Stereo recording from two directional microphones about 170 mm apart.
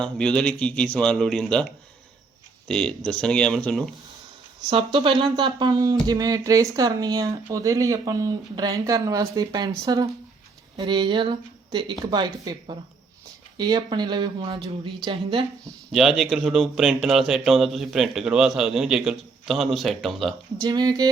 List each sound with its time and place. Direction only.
0.0 s speech: 5° left (ahead or behind)
2.6 s speech: 5° left (ahead or behind)
4.7 s speech: 30° right (ahead or behind)
15.9 s speech: centre (ahead or behind)
20.6 s speech: 20° right (ahead or behind)